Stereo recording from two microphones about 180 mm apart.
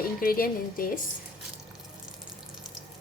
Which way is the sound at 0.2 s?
55° left (ahead or behind).